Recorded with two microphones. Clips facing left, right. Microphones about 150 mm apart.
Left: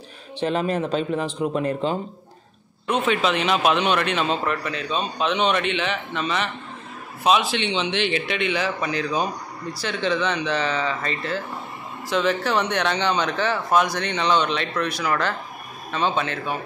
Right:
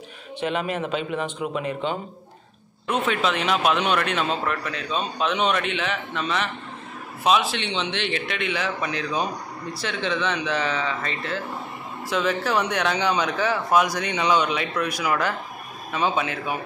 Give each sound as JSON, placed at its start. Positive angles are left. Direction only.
{"t": 0.4, "sound": "speech", "side_deg": 35}
{"t": 2.9, "sound": "a man's voice", "side_deg": 0}